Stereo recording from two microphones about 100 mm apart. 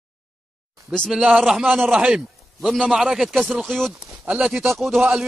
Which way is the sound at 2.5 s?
Centre (ahead or behind).